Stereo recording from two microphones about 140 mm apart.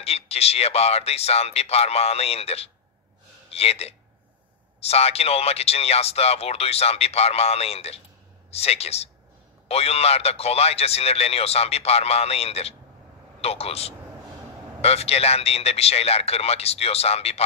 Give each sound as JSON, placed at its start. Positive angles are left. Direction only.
{"t": 0.0, "sound": "a man's voice", "side_deg": 45}